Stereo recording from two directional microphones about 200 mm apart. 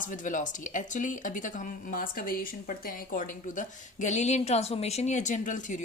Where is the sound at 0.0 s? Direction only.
40° left (ahead or behind).